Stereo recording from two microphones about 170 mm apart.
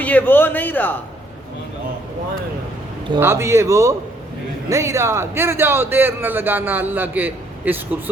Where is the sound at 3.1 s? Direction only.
15° right (ahead or behind).